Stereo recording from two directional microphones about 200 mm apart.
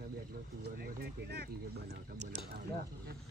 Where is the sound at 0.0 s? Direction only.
45° right (ahead or behind).